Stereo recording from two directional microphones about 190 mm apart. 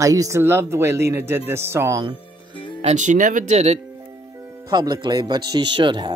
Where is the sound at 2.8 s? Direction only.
35° right (ahead or behind).